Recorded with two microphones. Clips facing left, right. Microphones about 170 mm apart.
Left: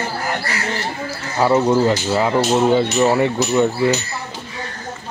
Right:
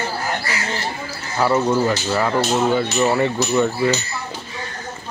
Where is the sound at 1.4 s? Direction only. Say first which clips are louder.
Left 3 dB; 15° left (ahead or behind).